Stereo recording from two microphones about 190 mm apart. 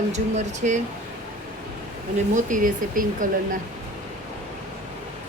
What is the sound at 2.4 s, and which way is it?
Speech, 45° right (ahead or behind).